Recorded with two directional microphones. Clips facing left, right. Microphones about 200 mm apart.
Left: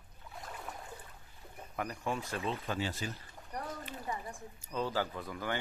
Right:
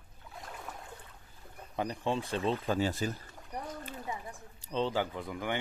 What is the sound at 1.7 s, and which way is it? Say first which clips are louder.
Speech: right 4 dB; 25° right (ahead or behind).